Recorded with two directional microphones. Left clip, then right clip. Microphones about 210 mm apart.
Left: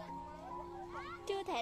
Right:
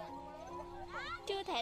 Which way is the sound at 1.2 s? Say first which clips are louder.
Left 1 dB; 5° left (ahead or behind).